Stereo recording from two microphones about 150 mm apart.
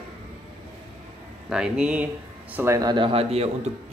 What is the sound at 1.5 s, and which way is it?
Speech, 5° right (ahead or behind).